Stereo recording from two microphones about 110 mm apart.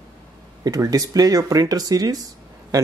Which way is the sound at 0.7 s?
30° right (ahead or behind).